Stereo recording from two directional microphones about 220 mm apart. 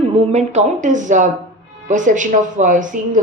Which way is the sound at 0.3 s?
30° right (ahead or behind).